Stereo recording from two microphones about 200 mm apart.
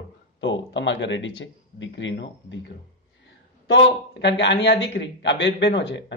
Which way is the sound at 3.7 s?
60° left (ahead or behind).